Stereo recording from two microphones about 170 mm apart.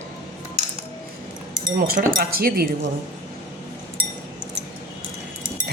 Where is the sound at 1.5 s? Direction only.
55° right (ahead or behind).